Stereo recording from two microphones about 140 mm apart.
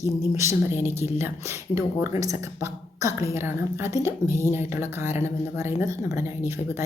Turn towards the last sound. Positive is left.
turn(degrees=-20)  # may be behind; listen again after turning